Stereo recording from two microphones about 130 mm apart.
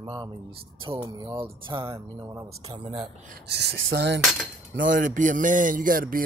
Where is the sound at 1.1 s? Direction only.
30° right (ahead or behind).